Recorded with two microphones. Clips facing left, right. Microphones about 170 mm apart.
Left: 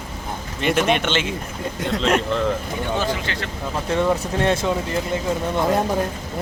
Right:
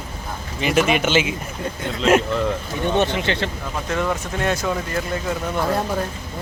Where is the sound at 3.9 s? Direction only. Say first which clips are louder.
Left 3 dB; 25° left (ahead or behind).